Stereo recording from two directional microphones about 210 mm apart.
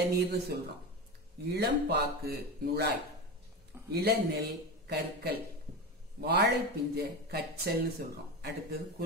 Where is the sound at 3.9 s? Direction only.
50° right (ahead or behind).